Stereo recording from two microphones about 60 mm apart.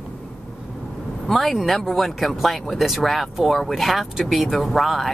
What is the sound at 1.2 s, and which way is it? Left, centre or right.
A woman's voice, centre.